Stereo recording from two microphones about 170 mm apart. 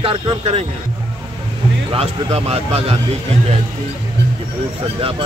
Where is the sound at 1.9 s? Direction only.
35° right (ahead or behind).